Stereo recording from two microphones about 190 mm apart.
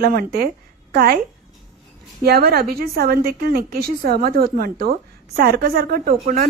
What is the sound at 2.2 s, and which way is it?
A woman's voice, 55° right (ahead or behind).